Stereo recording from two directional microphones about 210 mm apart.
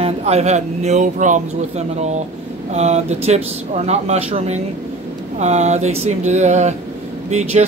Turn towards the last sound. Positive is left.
turn(degrees=-35)  # may be behind; listen again after turning